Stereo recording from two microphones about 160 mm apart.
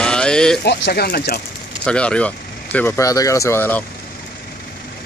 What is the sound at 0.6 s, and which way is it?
Speech, 85° left.